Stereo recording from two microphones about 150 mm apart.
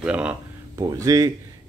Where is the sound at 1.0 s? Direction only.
25° right (ahead or behind).